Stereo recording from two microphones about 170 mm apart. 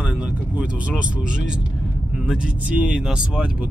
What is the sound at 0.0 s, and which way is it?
Vehicle, 5° right (ahead or behind).